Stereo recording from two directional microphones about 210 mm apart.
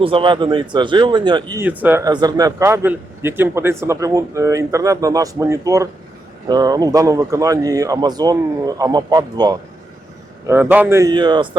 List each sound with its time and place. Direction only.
0.0 s speech: 25° right (ahead or behind)
1.6 s a man's voice: 10° right (ahead or behind)